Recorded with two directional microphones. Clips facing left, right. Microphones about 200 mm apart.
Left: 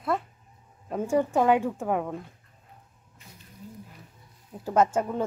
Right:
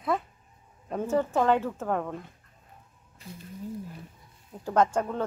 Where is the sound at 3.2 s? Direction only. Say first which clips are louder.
Right 9 dB; 35° right (ahead or behind).